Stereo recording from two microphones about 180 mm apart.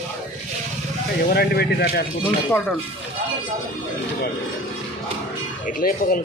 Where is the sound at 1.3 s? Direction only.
60° left (ahead or behind).